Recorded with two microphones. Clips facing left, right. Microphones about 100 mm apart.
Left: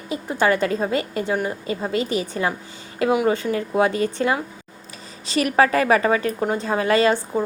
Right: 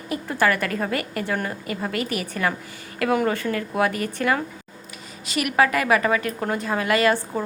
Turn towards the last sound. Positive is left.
turn(degrees=15)  # may be behind; listen again after turning